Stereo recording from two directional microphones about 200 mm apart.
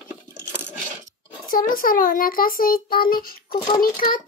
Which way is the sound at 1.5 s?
45° left (ahead or behind).